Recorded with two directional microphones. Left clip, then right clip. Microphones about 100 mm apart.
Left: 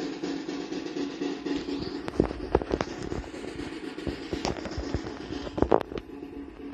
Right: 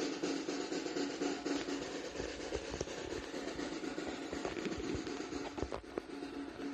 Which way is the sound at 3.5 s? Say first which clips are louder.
Left 4 dB; 25° right (ahead or behind).